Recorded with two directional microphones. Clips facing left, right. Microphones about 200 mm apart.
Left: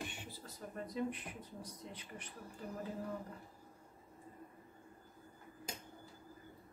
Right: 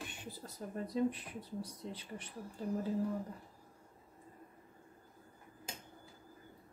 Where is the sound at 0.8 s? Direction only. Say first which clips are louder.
Right 5 dB; 35° right (ahead or behind).